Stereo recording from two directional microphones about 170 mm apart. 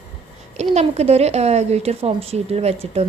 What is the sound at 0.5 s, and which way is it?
A woman's voice, 40° right (ahead or behind).